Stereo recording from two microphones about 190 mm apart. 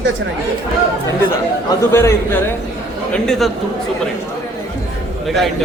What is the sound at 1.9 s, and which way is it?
Speech, 15° left (ahead or behind).